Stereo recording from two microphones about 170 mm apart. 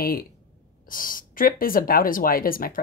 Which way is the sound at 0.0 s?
60° left (ahead or behind).